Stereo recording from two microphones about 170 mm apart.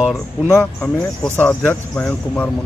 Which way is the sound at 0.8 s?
10° left (ahead or behind).